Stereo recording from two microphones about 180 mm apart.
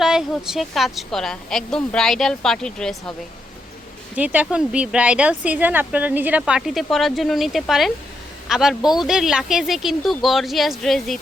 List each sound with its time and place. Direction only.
0.0 s a woman's voice: 5° right (ahead or behind)
4.1 s a woman's voice: 10° right (ahead or behind)